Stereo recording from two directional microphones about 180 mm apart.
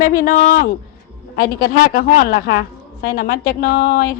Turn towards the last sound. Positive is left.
turn(degrees=55)  # may be behind; listen again after turning